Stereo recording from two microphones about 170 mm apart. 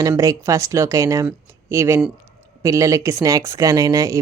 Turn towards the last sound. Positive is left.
turn(degrees=-20)  # may be behind; listen again after turning